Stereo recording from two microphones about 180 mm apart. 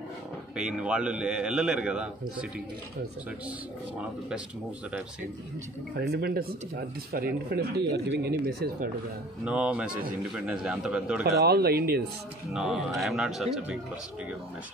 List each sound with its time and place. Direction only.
0.6 s speech: 5° right (ahead or behind)
5.9 s speech: 60° right (ahead or behind)
9.4 s speech: 5° right (ahead or behind)
11.4 s speech: 60° right (ahead or behind)
12.5 s speech: 5° right (ahead or behind)